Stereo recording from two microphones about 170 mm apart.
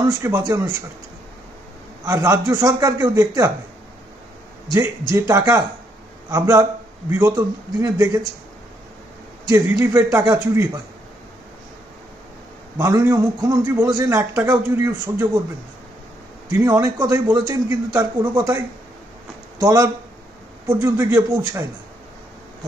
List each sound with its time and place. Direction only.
0.0 s a man's voice: 20° right (ahead or behind)
2.0 s a man's voice: 20° right (ahead or behind)
4.7 s a man's voice: 15° right (ahead or behind)
9.5 s a man's voice: 20° right (ahead or behind)
12.7 s a man's voice: 15° right (ahead or behind)
16.4 s a man's voice: 15° right (ahead or behind)
19.6 s a man's voice: 20° right (ahead or behind)